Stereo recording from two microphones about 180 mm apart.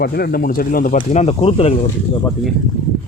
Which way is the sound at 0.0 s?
60° left (ahead or behind).